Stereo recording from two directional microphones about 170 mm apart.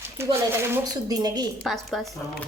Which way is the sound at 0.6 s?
20° right (ahead or behind).